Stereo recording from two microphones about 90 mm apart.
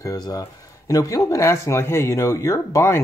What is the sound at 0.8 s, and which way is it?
Speech, 40° left (ahead or behind).